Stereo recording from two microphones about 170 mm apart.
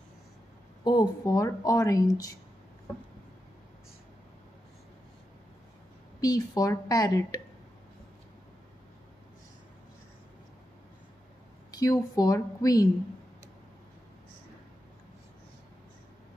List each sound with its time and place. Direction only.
0.8 s speech: 20° left (ahead or behind)
6.2 s speech: 20° left (ahead or behind)
11.7 s speech: 20° left (ahead or behind)